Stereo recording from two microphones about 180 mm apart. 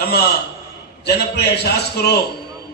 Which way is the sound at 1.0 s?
65° left (ahead or behind).